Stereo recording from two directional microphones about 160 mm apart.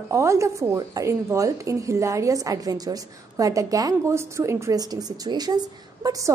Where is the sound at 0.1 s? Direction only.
20° right (ahead or behind).